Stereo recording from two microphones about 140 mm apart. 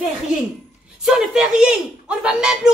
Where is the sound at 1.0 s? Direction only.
5° right (ahead or behind).